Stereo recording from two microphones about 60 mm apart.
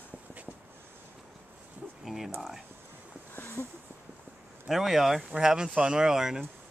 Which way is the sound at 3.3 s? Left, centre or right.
Left.